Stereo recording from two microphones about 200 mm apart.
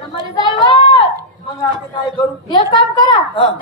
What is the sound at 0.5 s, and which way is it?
Speech, 25° left (ahead or behind).